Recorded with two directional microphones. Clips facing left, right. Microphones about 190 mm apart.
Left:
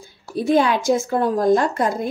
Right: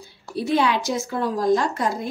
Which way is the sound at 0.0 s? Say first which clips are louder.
Left 4 dB; 50° left (ahead or behind).